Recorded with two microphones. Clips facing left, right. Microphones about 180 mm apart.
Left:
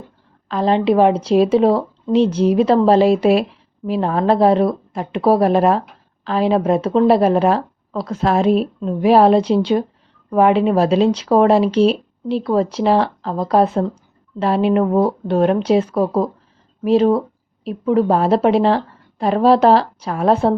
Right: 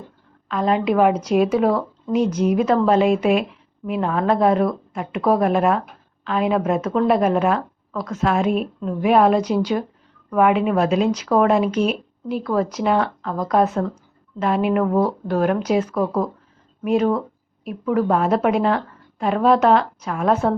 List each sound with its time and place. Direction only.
0.4 s speech: 30° left (ahead or behind)